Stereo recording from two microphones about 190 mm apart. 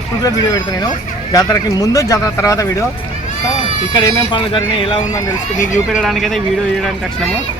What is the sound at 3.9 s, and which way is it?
Speech, 20° left (ahead or behind).